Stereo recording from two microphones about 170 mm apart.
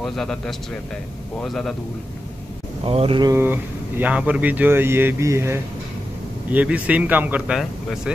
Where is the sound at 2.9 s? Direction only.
30° right (ahead or behind).